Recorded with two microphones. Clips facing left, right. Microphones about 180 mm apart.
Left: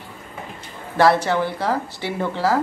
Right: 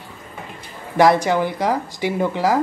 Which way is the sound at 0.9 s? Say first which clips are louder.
Right 2 dB; 15° right (ahead or behind).